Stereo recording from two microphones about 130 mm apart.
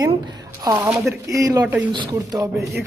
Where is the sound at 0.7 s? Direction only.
5° right (ahead or behind).